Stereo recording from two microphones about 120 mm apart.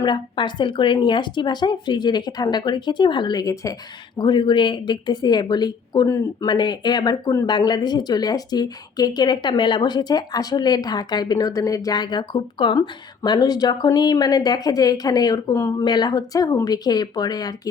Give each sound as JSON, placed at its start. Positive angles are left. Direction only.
{"t": 0.0, "sound": "speech", "side_deg": 40}
{"t": 4.2, "sound": "speech", "side_deg": 40}
{"t": 6.1, "sound": "speech", "side_deg": 25}
{"t": 6.5, "sound": "speech", "side_deg": 40}